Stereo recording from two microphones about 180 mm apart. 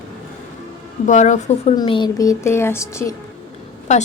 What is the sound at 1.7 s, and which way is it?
Speech, 25° left (ahead or behind).